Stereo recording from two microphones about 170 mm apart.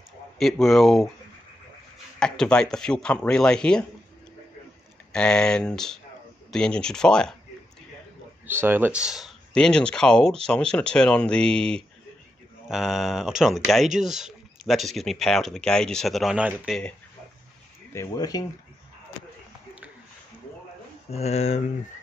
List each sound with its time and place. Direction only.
0.4 s speech: centre (ahead or behind)
2.1 s speech: 5° left (ahead or behind)
5.1 s speech: 5° left (ahead or behind)
8.5 s speech: 10° right (ahead or behind)
17.9 s speech: 20° left (ahead or behind)
21.1 s speech: 40° left (ahead or behind)